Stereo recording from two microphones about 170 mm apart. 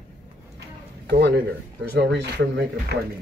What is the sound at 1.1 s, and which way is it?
Speech, 70° right (ahead or behind).